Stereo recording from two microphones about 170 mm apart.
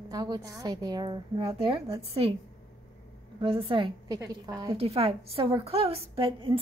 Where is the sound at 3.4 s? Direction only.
30° right (ahead or behind).